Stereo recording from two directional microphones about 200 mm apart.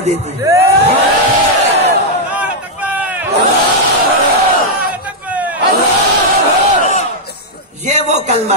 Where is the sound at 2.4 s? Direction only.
5° right (ahead or behind).